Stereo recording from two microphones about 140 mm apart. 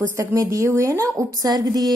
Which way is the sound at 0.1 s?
20° right (ahead or behind).